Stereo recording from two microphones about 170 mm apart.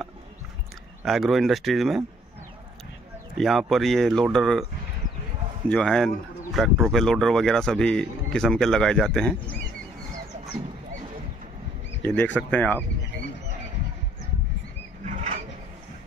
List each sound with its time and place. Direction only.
1.0 s speech: centre (ahead or behind)
3.3 s speech: centre (ahead or behind)
5.7 s speech: 5° left (ahead or behind)
12.0 s speech: 10° left (ahead or behind)
15.0 s a sound: 45° right (ahead or behind)